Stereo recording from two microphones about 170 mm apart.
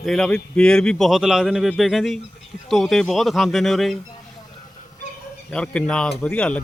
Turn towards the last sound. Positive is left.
turn(degrees=5)  # may be behind; listen again after turning